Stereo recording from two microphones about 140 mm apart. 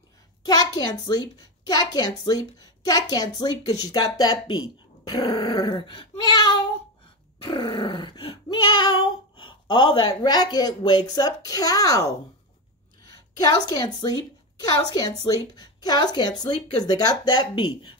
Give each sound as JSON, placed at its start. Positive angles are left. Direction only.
{"t": 0.4, "sound": "a woman's voice", "side_deg": 30}
{"t": 3.8, "sound": "a sound", "side_deg": 30}
{"t": 13.4, "sound": "a woman's voice", "side_deg": 30}